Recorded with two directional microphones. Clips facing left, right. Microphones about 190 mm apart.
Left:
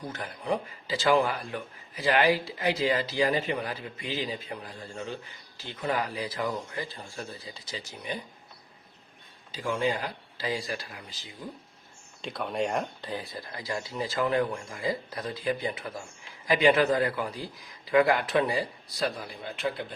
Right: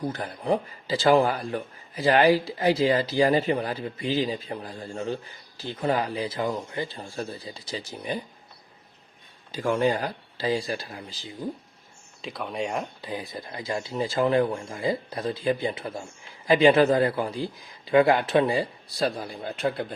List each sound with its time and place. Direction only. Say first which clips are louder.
0.1 s speech: right 1 dB; 35° right (ahead or behind)
9.5 s speech: right 5 dB; 50° right (ahead or behind); by 11.3 s 30° right (ahead or behind)
12.2 s speech: left 1 dB; centre (ahead or behind)
13.1 s a man's voice: right 2 dB; 20° right (ahead or behind); by 19.8 s 45° right (ahead or behind)